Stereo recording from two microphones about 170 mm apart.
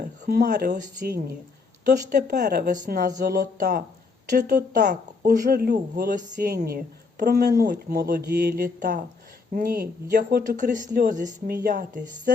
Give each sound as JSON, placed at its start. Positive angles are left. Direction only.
{"t": 0.3, "sound": "speech", "side_deg": -65}
{"t": 4.3, "sound": "speech", "side_deg": -50}
{"t": 5.2, "sound": "speech", "side_deg": -65}